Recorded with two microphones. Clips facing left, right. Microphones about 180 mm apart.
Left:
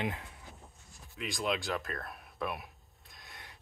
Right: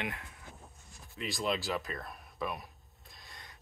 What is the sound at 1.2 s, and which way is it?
Speech, centre (ahead or behind).